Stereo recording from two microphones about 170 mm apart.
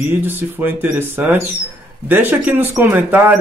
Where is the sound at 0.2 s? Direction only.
10° right (ahead or behind).